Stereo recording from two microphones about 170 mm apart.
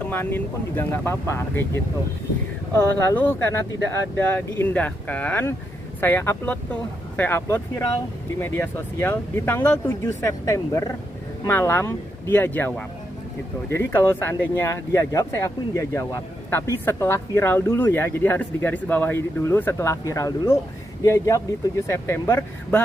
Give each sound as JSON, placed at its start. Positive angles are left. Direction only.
{"t": 0.0, "sound": "speech", "side_deg": 10}